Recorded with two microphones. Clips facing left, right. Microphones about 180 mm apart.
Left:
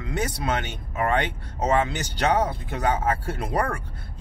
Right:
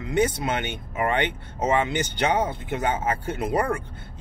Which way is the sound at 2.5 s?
20° right (ahead or behind).